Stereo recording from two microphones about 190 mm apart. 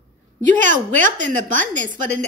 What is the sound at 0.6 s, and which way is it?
Speech, 40° right (ahead or behind).